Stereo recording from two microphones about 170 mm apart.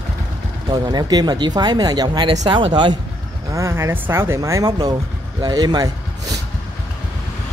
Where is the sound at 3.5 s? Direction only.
15° right (ahead or behind).